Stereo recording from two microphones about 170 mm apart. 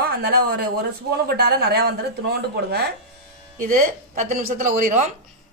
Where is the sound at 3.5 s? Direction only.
55° right (ahead or behind).